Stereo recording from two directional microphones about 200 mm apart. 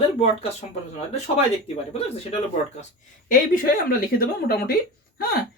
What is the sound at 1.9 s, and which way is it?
Speech, 30° left (ahead or behind).